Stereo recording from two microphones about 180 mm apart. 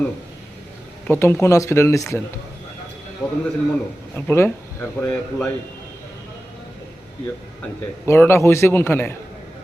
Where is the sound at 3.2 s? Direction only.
5° left (ahead or behind).